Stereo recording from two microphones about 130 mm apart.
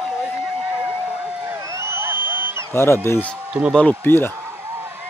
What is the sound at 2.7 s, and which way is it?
Speech, 20° left (ahead or behind).